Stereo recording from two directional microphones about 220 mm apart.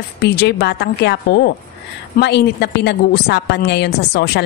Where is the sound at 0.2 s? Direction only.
50° left (ahead or behind).